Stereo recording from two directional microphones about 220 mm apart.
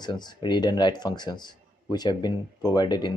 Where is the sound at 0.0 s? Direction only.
20° left (ahead or behind).